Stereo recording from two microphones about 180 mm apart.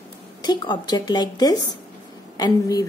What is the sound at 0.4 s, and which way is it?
A woman's voice, 25° left (ahead or behind).